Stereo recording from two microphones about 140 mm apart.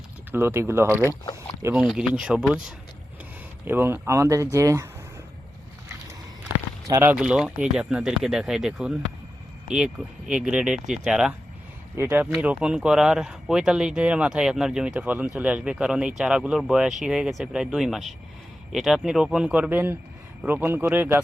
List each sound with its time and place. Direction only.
0.3 s speech: 15° right (ahead or behind)
1.7 s speech: 5° right (ahead or behind); by 4.9 s 25° right (ahead or behind)
6.8 s speech: 25° right (ahead or behind)
7.1 s speech: 5° right (ahead or behind)